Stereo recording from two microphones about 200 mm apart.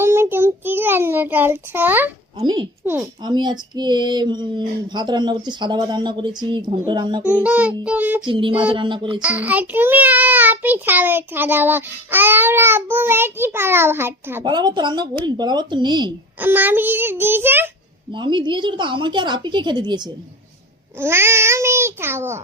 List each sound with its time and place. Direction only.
0.0 s child singing: 10° right (ahead or behind)
2.4 s female singing: 25° right (ahead or behind)
2.8 s child singing: 10° right (ahead or behind)
3.3 s female singing: 20° right (ahead or behind)
7.2 s child singing: 5° right (ahead or behind)
8.3 s female singing: 25° right (ahead or behind)
9.2 s child singing: 5° right (ahead or behind)
14.4 s female singing: 20° right (ahead or behind)
16.4 s child singing: 10° right (ahead or behind)
18.1 s female singing: 25° right (ahead or behind)
21.0 s child singing: 10° right (ahead or behind)